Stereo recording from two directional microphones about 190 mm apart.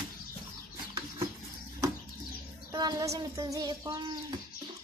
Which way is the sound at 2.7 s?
20° right (ahead or behind).